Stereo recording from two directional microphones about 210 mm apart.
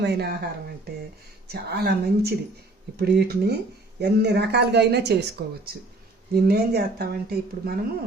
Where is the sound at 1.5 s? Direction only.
50° right (ahead or behind).